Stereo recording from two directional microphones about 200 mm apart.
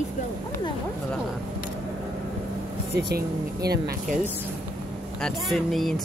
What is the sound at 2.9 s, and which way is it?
Speech, 55° right (ahead or behind).